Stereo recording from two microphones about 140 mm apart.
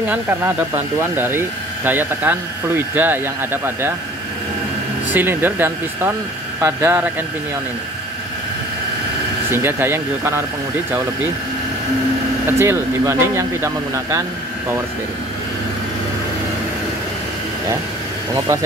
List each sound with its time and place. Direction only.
0.1 s speech: 15° right (ahead or behind)
5.1 s speech: 15° right (ahead or behind)
9.5 s speech: 15° right (ahead or behind)
12.4 s speech: 20° right (ahead or behind)